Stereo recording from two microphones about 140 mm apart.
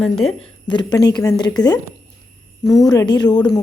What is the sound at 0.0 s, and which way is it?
Speech, centre (ahead or behind).